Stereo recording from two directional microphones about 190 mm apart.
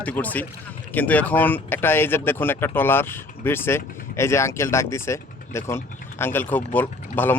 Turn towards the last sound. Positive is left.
turn(degrees=10)  # may be behind; listen again after turning